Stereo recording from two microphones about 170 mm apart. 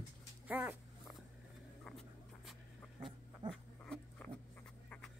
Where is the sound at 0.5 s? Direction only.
10° right (ahead or behind).